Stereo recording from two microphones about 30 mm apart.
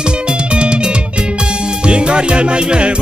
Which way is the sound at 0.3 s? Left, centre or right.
Right.